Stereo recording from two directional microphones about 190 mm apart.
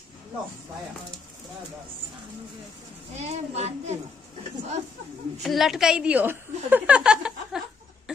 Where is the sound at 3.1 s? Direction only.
35° right (ahead or behind).